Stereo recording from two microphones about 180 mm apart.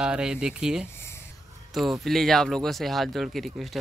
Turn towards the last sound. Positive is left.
turn(degrees=0)  # may be behind; listen again after turning